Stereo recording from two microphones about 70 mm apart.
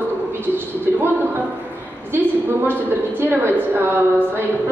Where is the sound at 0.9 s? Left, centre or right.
Right.